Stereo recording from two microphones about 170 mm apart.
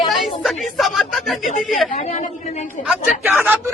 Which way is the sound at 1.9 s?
45° left (ahead or behind).